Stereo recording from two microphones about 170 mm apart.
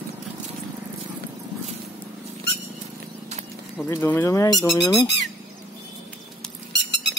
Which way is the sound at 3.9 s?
15° left (ahead or behind).